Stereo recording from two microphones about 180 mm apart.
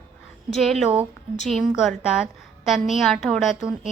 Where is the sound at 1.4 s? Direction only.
Centre (ahead or behind).